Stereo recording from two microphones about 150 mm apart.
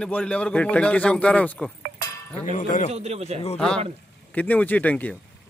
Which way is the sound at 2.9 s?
45° right (ahead or behind).